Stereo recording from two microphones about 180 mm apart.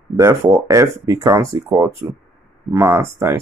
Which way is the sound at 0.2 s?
15° right (ahead or behind).